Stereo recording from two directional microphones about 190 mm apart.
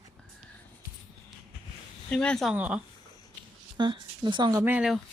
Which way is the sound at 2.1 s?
5° left (ahead or behind).